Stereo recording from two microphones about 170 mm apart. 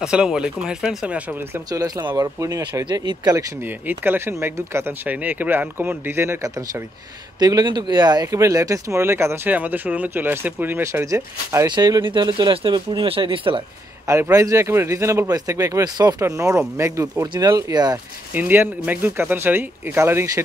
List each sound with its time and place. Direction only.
0.0 s speech: 5° right (ahead or behind)
1.7 s speech: 20° right (ahead or behind)
14.0 s speech: 15° right (ahead or behind)
18.3 s speech: 10° right (ahead or behind)